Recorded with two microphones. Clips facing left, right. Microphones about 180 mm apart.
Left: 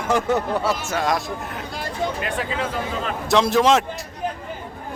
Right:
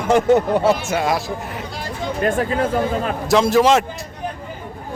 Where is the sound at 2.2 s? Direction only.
45° right (ahead or behind).